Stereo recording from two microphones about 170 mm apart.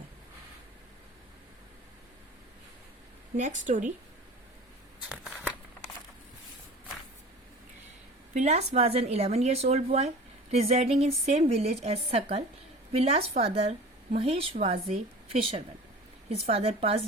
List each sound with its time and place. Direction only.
3.3 s a woman's voice: 45° right (ahead or behind)
4.9 s a sound: 5° right (ahead or behind)
8.3 s a woman's voice: 45° right (ahead or behind)